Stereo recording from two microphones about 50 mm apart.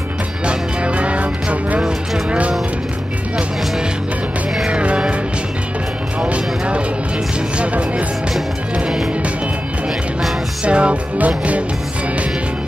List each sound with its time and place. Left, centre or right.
0.5 s music: right
4.6 s music: right
6.2 s music: right
10.6 s music: right